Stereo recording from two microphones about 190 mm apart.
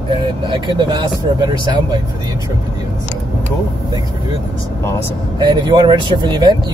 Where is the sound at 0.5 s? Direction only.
25° right (ahead or behind).